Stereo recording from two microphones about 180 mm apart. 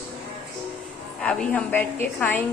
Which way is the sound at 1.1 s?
5° left (ahead or behind).